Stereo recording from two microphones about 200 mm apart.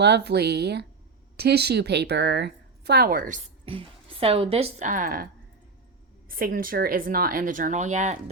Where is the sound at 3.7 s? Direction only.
30° right (ahead or behind); by 5.3 s 45° right (ahead or behind).